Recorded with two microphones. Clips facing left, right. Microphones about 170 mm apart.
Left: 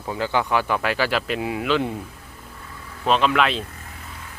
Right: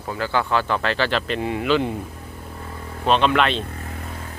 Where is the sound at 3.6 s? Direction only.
45° right (ahead or behind).